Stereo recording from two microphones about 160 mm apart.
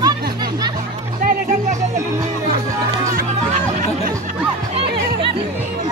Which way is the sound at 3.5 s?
50° right (ahead or behind).